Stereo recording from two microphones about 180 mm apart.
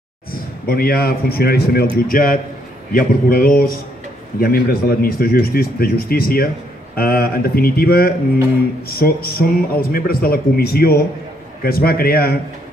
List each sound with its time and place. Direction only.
0.7 s speech: 55° left (ahead or behind)